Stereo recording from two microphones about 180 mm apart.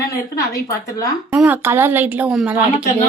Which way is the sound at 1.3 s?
10° right (ahead or behind).